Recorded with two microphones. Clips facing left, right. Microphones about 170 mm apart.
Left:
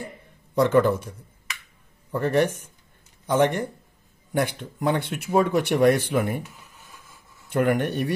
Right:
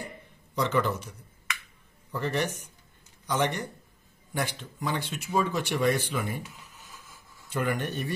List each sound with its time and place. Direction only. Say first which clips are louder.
0.6 s a man's voice: left 8 dB; 50° left (ahead or behind)
2.1 s a man's voice: left 8 dB; 55° left (ahead or behind)
7.4 s speech: left 8 dB; 55° left (ahead or behind)